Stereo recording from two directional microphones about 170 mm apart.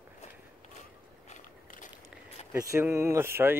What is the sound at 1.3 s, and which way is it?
Biting, 50° left (ahead or behind).